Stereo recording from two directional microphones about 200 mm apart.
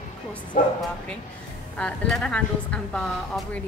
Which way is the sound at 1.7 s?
5° left (ahead or behind).